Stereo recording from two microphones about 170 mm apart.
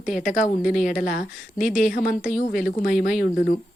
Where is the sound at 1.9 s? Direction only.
55° left (ahead or behind).